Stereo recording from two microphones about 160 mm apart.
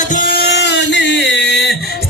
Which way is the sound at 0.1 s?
60° left (ahead or behind).